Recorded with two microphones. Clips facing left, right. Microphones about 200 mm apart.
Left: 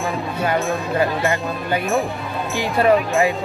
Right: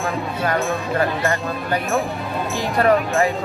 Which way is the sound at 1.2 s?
15° left (ahead or behind).